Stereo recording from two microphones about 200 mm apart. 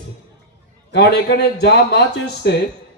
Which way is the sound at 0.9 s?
60° left (ahead or behind).